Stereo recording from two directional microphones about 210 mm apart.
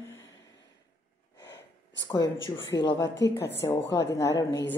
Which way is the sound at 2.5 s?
20° left (ahead or behind).